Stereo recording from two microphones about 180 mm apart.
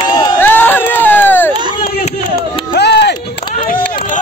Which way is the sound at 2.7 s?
65° left (ahead or behind).